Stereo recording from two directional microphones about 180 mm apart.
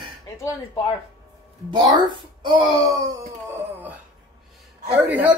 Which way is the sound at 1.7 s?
25° right (ahead or behind).